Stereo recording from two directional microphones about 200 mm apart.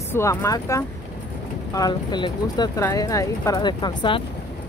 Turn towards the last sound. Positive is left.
turn(degrees=25)  # may be behind; listen again after turning